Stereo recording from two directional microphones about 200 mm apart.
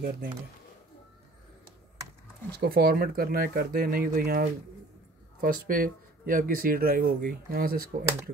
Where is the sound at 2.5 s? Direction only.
50° right (ahead or behind).